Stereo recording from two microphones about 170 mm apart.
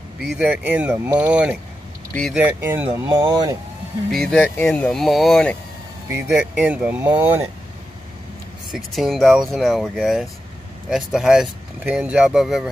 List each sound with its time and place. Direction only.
0.4 s speech: 10° right (ahead or behind)
4.1 s speech: centre (ahead or behind)
6.0 s speech: 10° right (ahead or behind)
8.7 s speech: centre (ahead or behind)